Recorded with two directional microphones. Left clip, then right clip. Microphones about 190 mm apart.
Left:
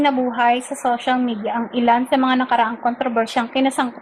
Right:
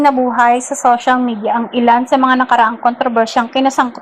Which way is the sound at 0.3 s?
15° right (ahead or behind).